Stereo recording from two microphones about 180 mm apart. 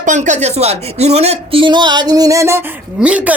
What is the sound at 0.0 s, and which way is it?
Speech, 40° right (ahead or behind).